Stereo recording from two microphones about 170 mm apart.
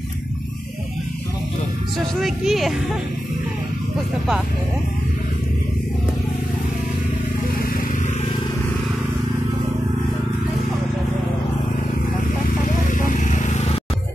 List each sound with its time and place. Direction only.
2.2 s speech: centre (ahead or behind)
12.6 s vehicle: 50° left (ahead or behind)